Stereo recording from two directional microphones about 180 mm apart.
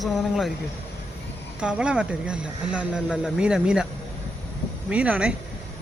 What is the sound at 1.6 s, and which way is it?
Speech, 5° right (ahead or behind).